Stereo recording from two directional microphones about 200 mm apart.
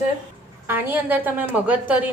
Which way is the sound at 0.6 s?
10° right (ahead or behind).